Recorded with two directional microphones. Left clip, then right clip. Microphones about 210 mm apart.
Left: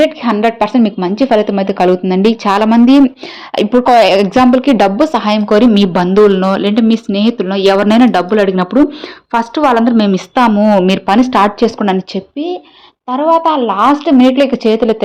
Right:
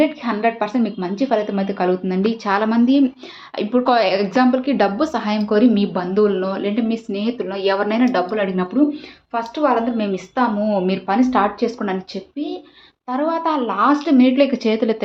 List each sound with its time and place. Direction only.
0.0 s a woman's voice: 40° left (ahead or behind)
9.7 s a woman's voice: 55° left (ahead or behind); by 14.9 s 30° left (ahead or behind)